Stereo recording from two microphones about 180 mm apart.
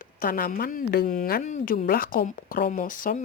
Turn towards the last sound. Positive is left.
turn(degrees=50)  # may be behind; listen again after turning